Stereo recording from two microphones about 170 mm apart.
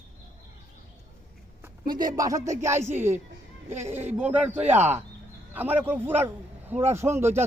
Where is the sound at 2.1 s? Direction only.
20° right (ahead or behind).